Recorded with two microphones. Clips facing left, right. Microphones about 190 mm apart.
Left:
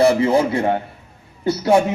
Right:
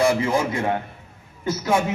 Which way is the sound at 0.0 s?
35° left (ahead or behind).